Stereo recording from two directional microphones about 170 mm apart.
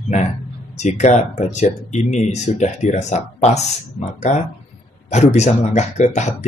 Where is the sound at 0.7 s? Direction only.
40° left (ahead or behind).